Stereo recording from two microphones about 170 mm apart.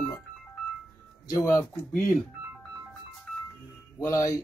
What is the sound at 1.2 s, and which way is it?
Speech, 20° left (ahead or behind).